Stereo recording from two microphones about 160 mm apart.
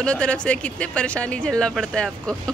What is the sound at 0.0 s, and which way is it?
Speech, 5° left (ahead or behind).